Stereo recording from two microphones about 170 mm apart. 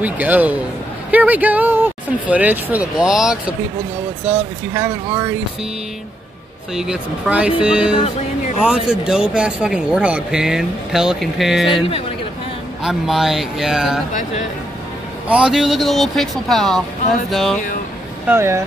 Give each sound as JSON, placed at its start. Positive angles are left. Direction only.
{"t": 0.0, "sound": "speech", "side_deg": -10}
{"t": 4.3, "sound": "speech", "side_deg": -15}
{"t": 6.7, "sound": "speech", "side_deg": -5}
{"t": 12.8, "sound": "speech", "side_deg": 0}
{"t": 15.2, "sound": "speech", "side_deg": -5}
{"t": 18.3, "sound": "speech", "side_deg": -15}